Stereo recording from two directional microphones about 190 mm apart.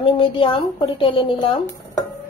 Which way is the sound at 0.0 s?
25° left (ahead or behind).